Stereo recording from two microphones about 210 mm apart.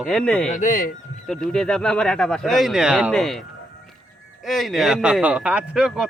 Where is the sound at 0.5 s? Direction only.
35° left (ahead or behind).